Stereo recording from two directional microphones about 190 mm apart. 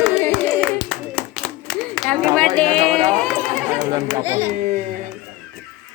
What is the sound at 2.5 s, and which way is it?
Speech, 5° left (ahead or behind).